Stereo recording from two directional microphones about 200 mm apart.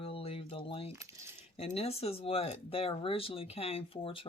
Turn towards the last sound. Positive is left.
turn(degrees=25)  # may be behind; listen again after turning